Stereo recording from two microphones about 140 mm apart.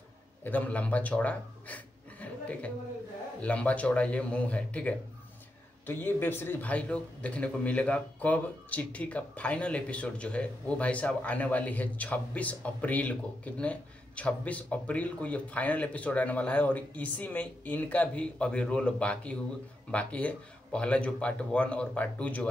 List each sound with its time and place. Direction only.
0.4 s a man's voice: 10° left (ahead or behind)